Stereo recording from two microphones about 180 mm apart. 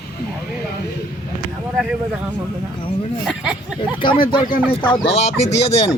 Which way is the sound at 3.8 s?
25° left (ahead or behind).